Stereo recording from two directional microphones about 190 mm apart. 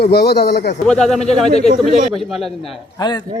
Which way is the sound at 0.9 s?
5° left (ahead or behind).